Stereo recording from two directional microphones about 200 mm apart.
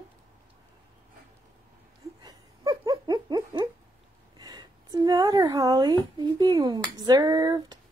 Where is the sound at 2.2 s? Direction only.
20° right (ahead or behind).